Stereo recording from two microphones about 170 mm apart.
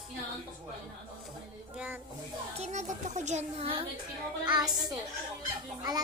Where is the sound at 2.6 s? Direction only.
45° right (ahead or behind).